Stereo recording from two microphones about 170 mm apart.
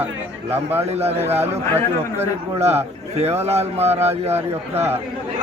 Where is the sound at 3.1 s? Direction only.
40° right (ahead or behind).